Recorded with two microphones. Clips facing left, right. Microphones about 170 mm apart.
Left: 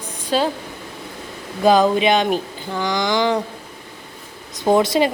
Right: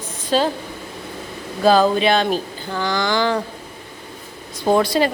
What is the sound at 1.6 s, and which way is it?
Speech, 15° left (ahead or behind).